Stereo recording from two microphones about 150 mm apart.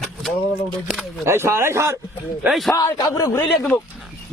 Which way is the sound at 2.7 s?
25° left (ahead or behind).